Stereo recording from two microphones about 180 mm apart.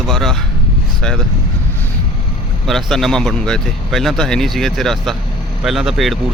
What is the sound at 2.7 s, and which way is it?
A man's voice, centre (ahead or behind).